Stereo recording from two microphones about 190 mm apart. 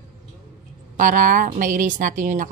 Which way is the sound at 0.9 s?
45° right (ahead or behind).